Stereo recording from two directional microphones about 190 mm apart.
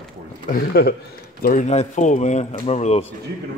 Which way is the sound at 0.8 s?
55° left (ahead or behind).